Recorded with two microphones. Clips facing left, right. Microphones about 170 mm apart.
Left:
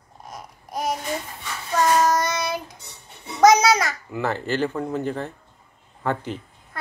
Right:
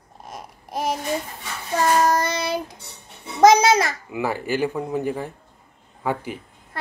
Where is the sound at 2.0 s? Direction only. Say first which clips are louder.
Right 1 dB; 30° right (ahead or behind).